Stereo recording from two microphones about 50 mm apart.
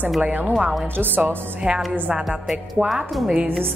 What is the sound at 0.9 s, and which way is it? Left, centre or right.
Speech, right.